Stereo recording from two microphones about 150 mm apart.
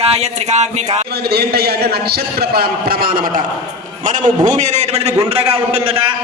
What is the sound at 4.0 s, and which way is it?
Speech, 55° right (ahead or behind).